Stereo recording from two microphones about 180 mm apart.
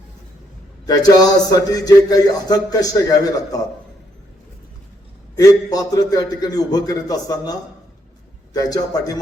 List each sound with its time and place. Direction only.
0.9 s a man's voice: 20° left (ahead or behind)
5.4 s a man's voice: 20° left (ahead or behind)
8.5 s a man's voice: 20° left (ahead or behind)